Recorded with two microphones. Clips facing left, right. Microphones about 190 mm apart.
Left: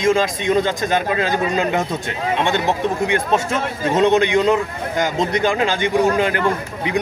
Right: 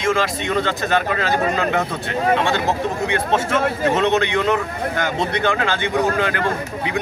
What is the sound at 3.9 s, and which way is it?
Speech, 15° left (ahead or behind).